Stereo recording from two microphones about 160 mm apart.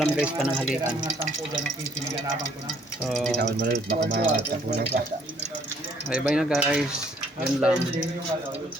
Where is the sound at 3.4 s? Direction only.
90° right.